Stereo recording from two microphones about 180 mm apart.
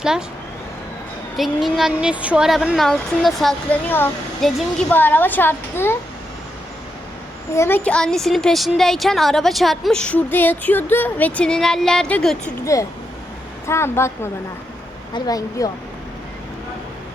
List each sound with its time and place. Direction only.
0.0 s a woman's voice: 5° right (ahead or behind)
1.4 s a woman's voice: centre (ahead or behind)
7.5 s a woman's voice: 15° left (ahead or behind)
13.7 s speech: 15° left (ahead or behind)